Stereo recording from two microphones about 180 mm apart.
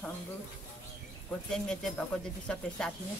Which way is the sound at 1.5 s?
5° left (ahead or behind).